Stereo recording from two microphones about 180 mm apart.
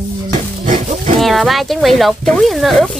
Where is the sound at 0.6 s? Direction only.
45° right (ahead or behind).